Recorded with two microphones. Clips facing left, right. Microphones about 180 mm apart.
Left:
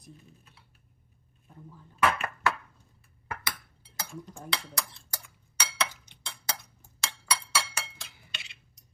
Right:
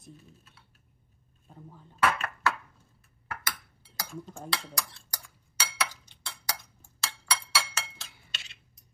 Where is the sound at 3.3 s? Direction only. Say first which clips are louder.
Left 1 dB; 20° left (ahead or behind).